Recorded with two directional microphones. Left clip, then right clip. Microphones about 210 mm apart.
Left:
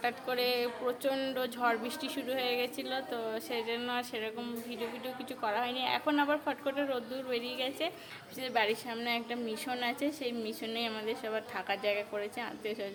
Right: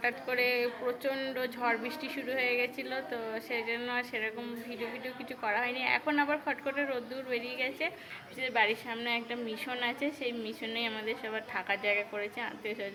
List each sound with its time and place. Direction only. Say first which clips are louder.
0.0 s a woman's voice: right 2 dB; 15° left (ahead or behind)